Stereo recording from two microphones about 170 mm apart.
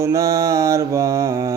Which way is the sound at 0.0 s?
20° right (ahead or behind).